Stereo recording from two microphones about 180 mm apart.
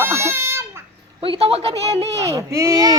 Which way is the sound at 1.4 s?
35° right (ahead or behind).